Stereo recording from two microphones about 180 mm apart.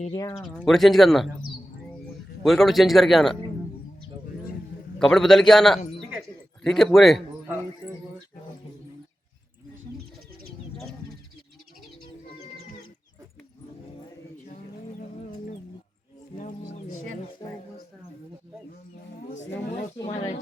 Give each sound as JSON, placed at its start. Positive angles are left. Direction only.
{"t": 0.1, "sound": "speech", "side_deg": 20}
{"t": 0.3, "sound": "speech", "side_deg": 0}
{"t": 2.4, "sound": "speech", "side_deg": 0}
{"t": 4.9, "sound": "speech", "side_deg": 0}
{"t": 6.1, "sound": "a sound", "side_deg": 0}
{"t": 19.3, "sound": "a sound", "side_deg": 90}
{"t": 20.0, "sound": "speech", "side_deg": 25}